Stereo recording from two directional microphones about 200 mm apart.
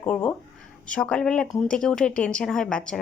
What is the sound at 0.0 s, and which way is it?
A woman's voice, 5° left (ahead or behind).